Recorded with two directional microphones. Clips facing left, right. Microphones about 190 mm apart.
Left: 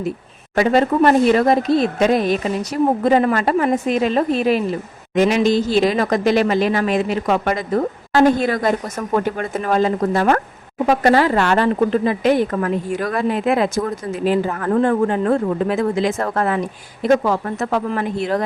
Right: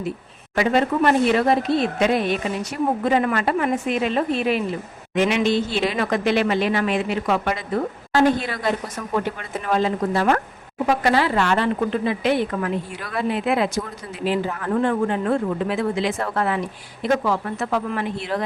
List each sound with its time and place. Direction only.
0.5 s a woman's voice: 40° left (ahead or behind)